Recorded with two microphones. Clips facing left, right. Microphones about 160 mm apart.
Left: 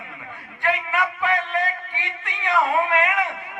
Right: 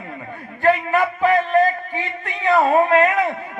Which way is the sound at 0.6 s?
35° right (ahead or behind).